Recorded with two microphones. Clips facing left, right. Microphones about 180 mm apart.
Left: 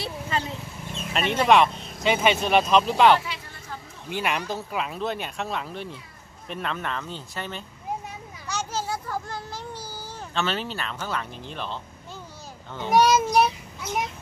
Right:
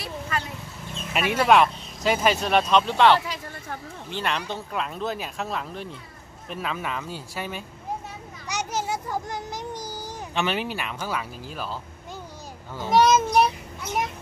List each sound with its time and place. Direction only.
0.0 s vehicle: 25° left (ahead or behind)
1.1 s speech: 5° right (ahead or behind)
3.3 s a sound: 55° right (ahead or behind)
4.1 s speech: 10° left (ahead or behind); by 7.6 s 10° right (ahead or behind)
8.5 s a sound: 20° right (ahead or behind)
13.0 s a child's voice: 5° left (ahead or behind)